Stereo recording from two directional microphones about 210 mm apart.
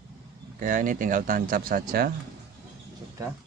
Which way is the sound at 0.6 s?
40° right (ahead or behind).